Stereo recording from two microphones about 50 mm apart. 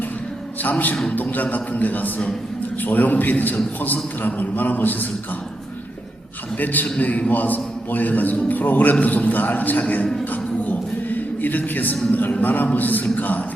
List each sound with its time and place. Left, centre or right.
0.6 s a man's voice: left
6.9 s a man's voice: left
10.7 s a sound: left
12.1 s a man's voice: left